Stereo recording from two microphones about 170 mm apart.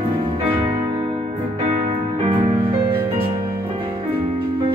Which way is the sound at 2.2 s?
30° right (ahead or behind).